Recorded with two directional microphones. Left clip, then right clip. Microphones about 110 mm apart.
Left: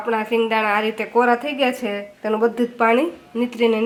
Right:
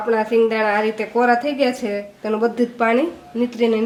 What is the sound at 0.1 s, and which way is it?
A woman's voice, 20° left (ahead or behind).